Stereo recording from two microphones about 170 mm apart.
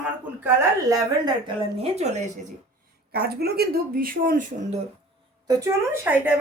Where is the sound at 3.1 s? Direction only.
70° right (ahead or behind); by 4.8 s 40° right (ahead or behind).